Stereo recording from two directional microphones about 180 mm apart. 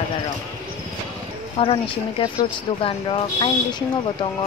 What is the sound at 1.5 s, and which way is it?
Speech, 30° left (ahead or behind).